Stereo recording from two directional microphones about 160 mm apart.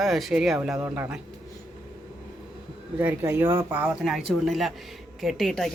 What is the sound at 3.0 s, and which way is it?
A man's voice, 15° right (ahead or behind).